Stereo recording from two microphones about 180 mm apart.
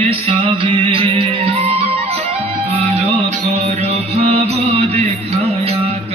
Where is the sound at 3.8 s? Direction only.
35° right (ahead or behind).